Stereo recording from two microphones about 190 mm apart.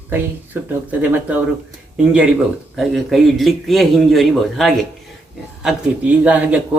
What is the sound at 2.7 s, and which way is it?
Speech, centre (ahead or behind).